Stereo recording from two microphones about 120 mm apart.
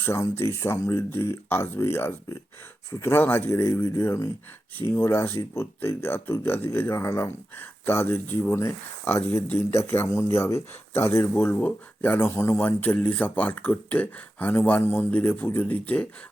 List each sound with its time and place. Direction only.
0.0 s speech: 20° left (ahead or behind)